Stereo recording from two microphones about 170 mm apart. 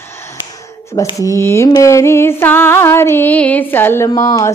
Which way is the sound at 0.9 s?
20° left (ahead or behind).